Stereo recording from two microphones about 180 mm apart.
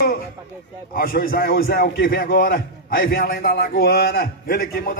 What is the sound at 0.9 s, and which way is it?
A man's voice, 55° left (ahead or behind).